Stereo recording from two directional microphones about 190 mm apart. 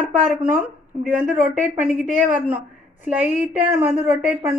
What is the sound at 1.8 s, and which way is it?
Speech, 10° right (ahead or behind).